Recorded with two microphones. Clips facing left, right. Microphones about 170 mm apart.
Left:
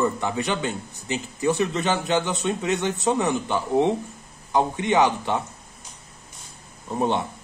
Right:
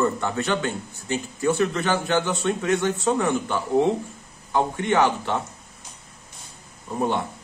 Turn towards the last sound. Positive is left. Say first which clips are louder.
# left 1 dB
turn(degrees=25)  # may be behind; listen again after turning